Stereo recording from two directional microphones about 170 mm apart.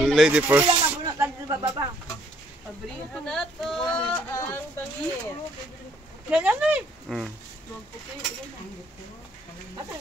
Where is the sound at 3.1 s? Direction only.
Centre (ahead or behind).